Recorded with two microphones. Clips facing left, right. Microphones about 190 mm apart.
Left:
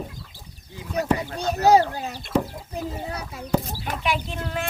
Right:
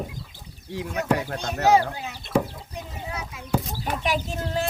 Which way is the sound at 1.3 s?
35° left (ahead or behind).